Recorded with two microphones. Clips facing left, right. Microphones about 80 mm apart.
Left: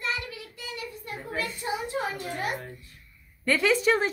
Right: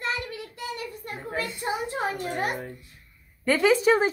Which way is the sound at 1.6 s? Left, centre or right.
Right.